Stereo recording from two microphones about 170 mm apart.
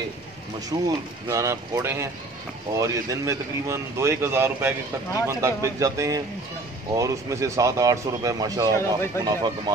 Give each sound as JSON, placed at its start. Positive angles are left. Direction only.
{"t": 0.7, "sound": "speech", "side_deg": -20}
{"t": 8.7, "sound": "speech", "side_deg": 15}